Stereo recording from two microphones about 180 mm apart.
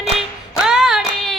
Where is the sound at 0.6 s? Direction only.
5° right (ahead or behind).